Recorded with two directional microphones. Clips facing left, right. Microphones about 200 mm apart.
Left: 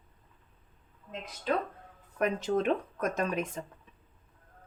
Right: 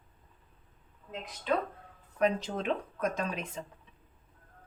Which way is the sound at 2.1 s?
50° left (ahead or behind).